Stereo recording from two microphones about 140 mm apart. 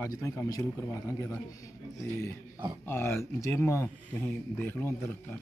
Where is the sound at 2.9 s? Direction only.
15° left (ahead or behind).